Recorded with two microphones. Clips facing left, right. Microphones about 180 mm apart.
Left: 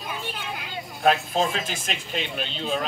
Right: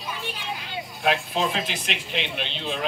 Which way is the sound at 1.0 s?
45° left (ahead or behind).